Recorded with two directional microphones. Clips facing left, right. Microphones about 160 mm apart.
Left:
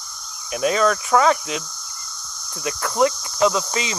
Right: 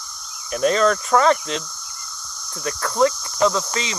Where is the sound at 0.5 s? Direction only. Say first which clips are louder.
Right 1 dB; 5° left (ahead or behind).